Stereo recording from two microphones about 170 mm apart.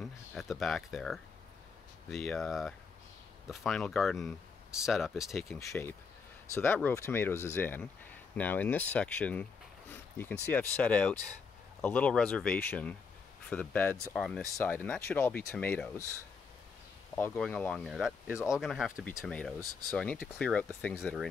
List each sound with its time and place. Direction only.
0.0 s speech: centre (ahead or behind)
5.6 s speech: 15° left (ahead or behind)
17.1 s speech: 10° left (ahead or behind)
17.8 s speech: 5° right (ahead or behind)